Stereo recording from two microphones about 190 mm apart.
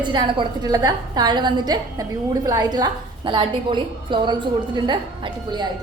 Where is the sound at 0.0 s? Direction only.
25° right (ahead or behind).